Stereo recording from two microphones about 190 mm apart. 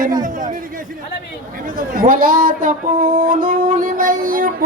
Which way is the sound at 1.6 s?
50° right (ahead or behind).